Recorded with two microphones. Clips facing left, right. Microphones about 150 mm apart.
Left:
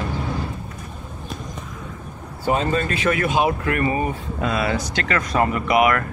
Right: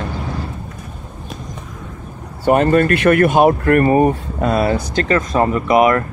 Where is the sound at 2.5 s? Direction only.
60° right (ahead or behind); by 6.0 s 35° right (ahead or behind).